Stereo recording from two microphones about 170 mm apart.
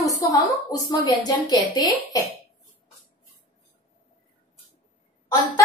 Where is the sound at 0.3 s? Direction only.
20° left (ahead or behind).